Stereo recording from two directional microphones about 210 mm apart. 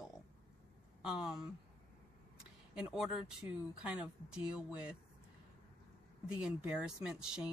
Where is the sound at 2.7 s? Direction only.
5° right (ahead or behind).